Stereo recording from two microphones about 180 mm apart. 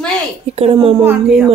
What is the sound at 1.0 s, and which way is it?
Speech, 10° right (ahead or behind).